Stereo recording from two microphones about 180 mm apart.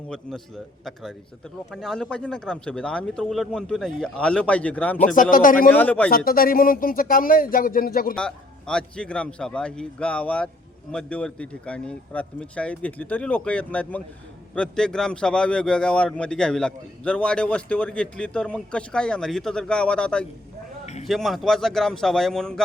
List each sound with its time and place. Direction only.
0.1 s a man's voice: 5° left (ahead or behind)
1.7 s a man's voice: centre (ahead or behind)
4.9 s speech: 45° left (ahead or behind)
5.7 s speech: 10° left (ahead or behind)
6.1 s speech: 55° left (ahead or behind)
8.1 s a man's voice: 5° left (ahead or behind)